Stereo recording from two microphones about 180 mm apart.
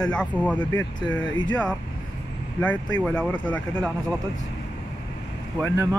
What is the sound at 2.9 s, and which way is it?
Speech, 5° left (ahead or behind).